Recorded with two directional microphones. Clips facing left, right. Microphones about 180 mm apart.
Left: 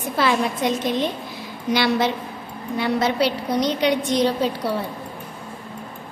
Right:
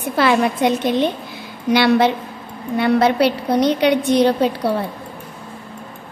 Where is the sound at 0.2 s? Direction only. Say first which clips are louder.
Right 5 dB; 60° right (ahead or behind).